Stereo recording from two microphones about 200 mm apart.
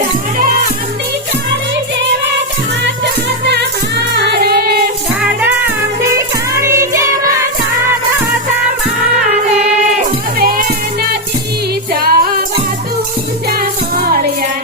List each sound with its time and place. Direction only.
2.8 s music: 60° right (ahead or behind)
6.6 s music: 15° right (ahead or behind)
10.3 s music: 45° right (ahead or behind)
11.9 s music: 45° right (ahead or behind)
13.5 s music: 50° right (ahead or behind)